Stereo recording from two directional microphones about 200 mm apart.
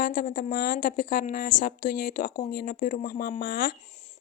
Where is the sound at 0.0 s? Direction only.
45° left (ahead or behind).